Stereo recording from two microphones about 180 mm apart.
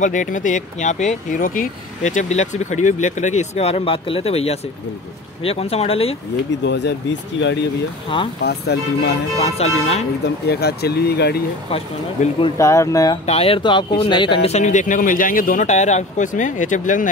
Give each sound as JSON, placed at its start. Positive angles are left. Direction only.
{"t": 0.0, "sound": "speech", "side_deg": 45}
{"t": 6.6, "sound": "speech", "side_deg": 75}
{"t": 8.5, "sound": "speech", "side_deg": 65}
{"t": 9.4, "sound": "speech", "side_deg": 35}
{"t": 10.5, "sound": "speech", "side_deg": 60}
{"t": 11.7, "sound": "speech", "side_deg": 30}
{"t": 12.5, "sound": "speech", "side_deg": 15}
{"t": 13.3, "sound": "speech", "side_deg": 30}